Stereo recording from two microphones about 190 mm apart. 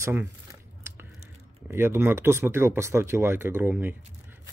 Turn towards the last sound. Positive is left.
turn(degrees=-10)  # may be behind; listen again after turning